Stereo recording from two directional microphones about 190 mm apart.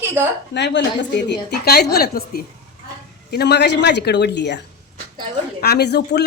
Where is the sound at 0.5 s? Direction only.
65° left (ahead or behind).